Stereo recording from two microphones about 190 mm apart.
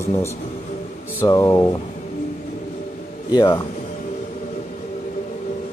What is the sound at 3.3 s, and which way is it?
Speech, 20° left (ahead or behind).